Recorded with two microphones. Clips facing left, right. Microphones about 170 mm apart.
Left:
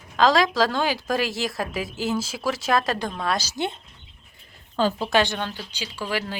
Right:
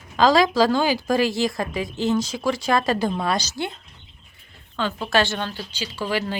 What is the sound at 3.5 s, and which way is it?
Speech, 20° left (ahead or behind).